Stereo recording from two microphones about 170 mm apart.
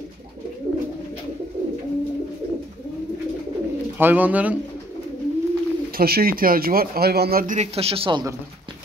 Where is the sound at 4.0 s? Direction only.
10° right (ahead or behind).